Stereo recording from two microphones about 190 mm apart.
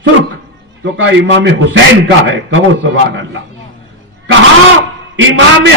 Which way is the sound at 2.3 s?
90° right.